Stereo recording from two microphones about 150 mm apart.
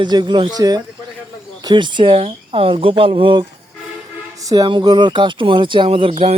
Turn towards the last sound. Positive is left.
turn(degrees=-40)  # may be behind; listen again after turning